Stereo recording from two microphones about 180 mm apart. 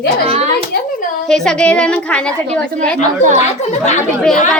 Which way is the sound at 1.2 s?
5° left (ahead or behind).